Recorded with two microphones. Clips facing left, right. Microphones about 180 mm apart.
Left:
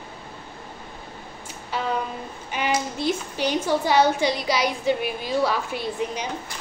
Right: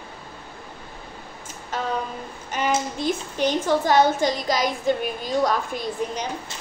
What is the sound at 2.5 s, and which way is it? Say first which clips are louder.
Child singing: right 2 dB; 45° right (ahead or behind).